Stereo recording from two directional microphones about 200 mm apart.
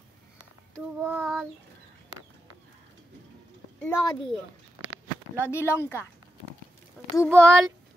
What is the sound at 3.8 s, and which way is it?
Speech, 10° left (ahead or behind).